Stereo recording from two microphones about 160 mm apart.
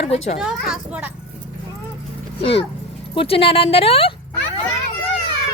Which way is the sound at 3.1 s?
35° left (ahead or behind).